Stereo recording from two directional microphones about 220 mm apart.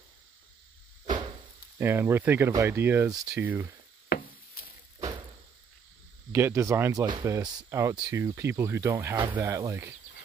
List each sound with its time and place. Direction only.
1.8 s speech: 10° right (ahead or behind)
4.1 s a sound: 40° left (ahead or behind)
6.3 s speech: 10° right (ahead or behind)